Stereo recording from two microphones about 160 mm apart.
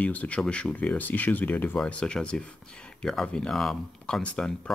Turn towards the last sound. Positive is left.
turn(degrees=5)  # may be behind; listen again after turning